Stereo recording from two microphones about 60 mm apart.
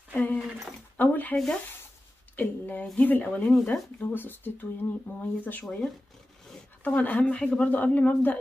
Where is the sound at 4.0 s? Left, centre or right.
Left.